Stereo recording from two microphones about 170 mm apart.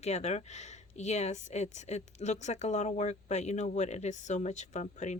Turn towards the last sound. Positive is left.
turn(degrees=45)  # may be behind; listen again after turning